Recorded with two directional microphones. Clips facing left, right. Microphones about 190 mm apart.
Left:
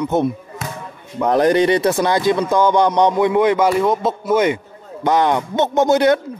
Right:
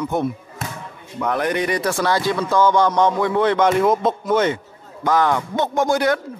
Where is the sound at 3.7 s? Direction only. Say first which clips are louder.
Even; centre (ahead or behind).